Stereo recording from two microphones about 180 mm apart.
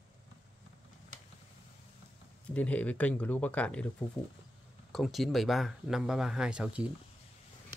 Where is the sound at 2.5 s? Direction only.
10° left (ahead or behind).